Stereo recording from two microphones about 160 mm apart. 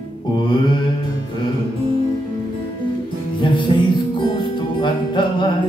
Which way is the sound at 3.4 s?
30° left (ahead or behind).